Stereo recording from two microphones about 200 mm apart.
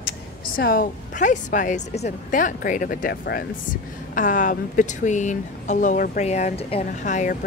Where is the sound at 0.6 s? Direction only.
45° left (ahead or behind).